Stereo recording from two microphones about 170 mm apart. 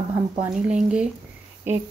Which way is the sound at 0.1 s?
10° right (ahead or behind).